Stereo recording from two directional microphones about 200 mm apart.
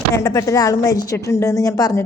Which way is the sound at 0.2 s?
15° left (ahead or behind).